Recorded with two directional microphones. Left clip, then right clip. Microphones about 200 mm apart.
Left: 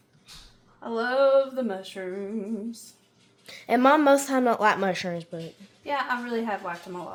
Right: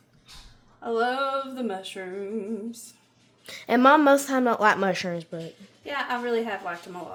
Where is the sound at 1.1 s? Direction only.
15° left (ahead or behind).